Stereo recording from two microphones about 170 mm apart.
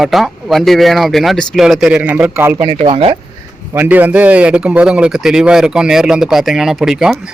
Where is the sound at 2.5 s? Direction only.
35° right (ahead or behind).